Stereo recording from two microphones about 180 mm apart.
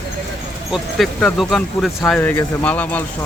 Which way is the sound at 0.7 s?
Centre (ahead or behind).